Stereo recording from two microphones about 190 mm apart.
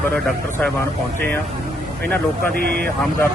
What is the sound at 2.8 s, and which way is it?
Speech, 10° left (ahead or behind).